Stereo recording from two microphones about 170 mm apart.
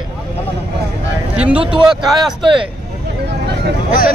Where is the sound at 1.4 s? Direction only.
5° right (ahead or behind).